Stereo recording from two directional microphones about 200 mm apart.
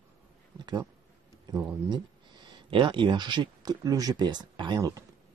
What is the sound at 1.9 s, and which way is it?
Speech, 20° right (ahead or behind).